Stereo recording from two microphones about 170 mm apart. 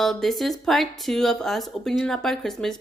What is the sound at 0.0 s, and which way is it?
Speech, centre (ahead or behind).